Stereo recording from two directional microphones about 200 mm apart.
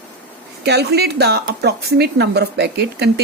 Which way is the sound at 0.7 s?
55° right (ahead or behind).